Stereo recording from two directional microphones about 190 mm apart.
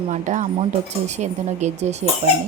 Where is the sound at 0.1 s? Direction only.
40° right (ahead or behind).